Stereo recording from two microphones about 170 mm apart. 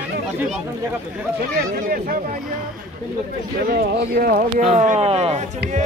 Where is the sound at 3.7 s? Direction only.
60° right (ahead or behind).